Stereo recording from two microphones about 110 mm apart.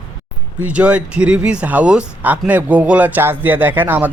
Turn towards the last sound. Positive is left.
turn(degrees=-15)  # may be behind; listen again after turning